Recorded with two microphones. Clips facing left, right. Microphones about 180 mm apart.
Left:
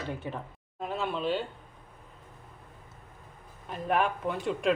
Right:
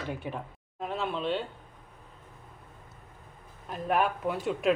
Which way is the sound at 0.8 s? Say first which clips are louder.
Even; centre (ahead or behind).